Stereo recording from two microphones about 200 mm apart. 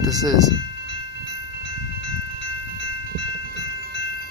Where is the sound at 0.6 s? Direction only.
65° left (ahead or behind).